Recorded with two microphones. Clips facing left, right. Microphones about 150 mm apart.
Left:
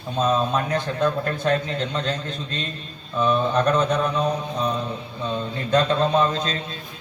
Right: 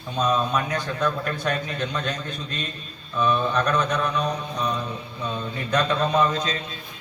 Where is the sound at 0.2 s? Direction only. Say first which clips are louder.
Left 2 dB; 25° left (ahead or behind).